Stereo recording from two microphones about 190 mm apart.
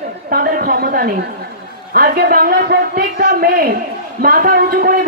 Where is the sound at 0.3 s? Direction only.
50° right (ahead or behind).